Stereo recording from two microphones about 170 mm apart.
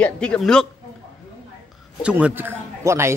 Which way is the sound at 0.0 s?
5° left (ahead or behind).